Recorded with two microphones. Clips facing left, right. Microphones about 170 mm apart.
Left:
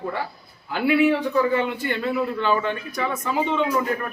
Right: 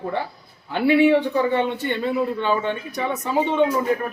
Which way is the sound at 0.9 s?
25° right (ahead or behind).